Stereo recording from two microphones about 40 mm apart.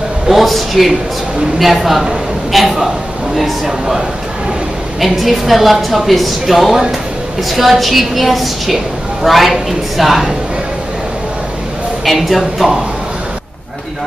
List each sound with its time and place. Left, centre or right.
0.3 s a woman's voice: centre
3.6 s a man's voice: centre
5.0 s a woman's voice: centre
12.0 s a woman's voice: centre